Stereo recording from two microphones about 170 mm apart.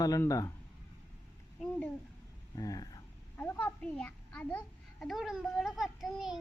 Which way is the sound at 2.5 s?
20° left (ahead or behind).